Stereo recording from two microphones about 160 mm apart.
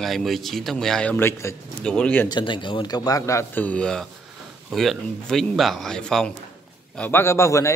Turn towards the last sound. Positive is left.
turn(degrees=20)  # may be behind; listen again after turning